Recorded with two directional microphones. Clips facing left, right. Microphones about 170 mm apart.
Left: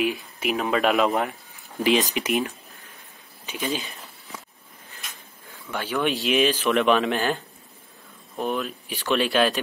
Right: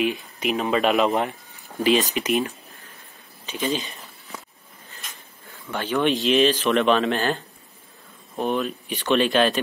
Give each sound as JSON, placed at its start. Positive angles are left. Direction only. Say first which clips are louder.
{"t": 0.0, "sound": "speech", "louder": "right 1 dB", "side_deg": 5}
{"t": 1.8, "sound": "speech", "louder": "right 1 dB", "side_deg": 15}
{"t": 3.4, "sound": "speech", "louder": "right 3 dB", "side_deg": 10}
{"t": 5.7, "sound": "speech", "louder": "right 3 dB", "side_deg": 10}
{"t": 8.5, "sound": "speech", "louder": "right 3 dB", "side_deg": 0}